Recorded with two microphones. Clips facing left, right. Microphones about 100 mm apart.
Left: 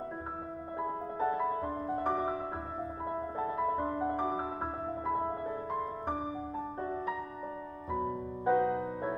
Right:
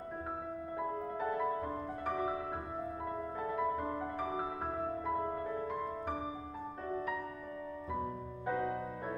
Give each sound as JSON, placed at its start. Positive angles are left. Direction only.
{"t": 0.7, "sound": "music", "side_deg": 25}
{"t": 6.8, "sound": "music", "side_deg": 25}
{"t": 8.5, "sound": "music", "side_deg": 25}